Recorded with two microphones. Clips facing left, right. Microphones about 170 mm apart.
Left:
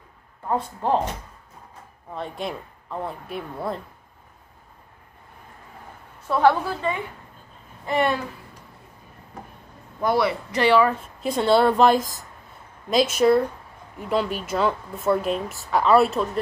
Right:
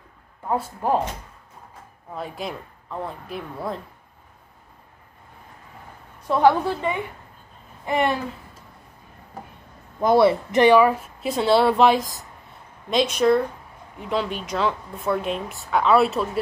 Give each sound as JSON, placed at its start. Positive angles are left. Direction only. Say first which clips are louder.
{"t": 0.5, "sound": "a woman's voice", "louder": "even", "side_deg": -10}
{"t": 2.1, "sound": "speech", "louder": "left 1 dB", "side_deg": -5}
{"t": 6.2, "sound": "a woman's voice", "louder": "right 1 dB", "side_deg": -15}
{"t": 10.0, "sound": "speech", "louder": "right 5 dB", "side_deg": -20}